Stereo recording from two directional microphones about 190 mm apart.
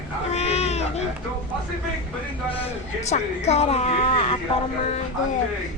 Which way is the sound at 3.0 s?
35° left (ahead or behind).